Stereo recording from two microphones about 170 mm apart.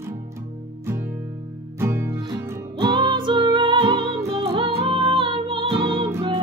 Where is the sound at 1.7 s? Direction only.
15° right (ahead or behind).